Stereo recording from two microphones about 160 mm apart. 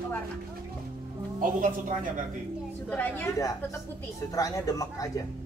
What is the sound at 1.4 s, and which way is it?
Speech, 55° right (ahead or behind).